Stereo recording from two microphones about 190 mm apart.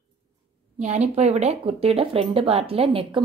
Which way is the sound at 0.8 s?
35° right (ahead or behind).